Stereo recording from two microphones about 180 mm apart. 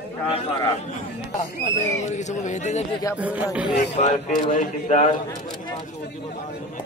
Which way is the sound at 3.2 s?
10° right (ahead or behind).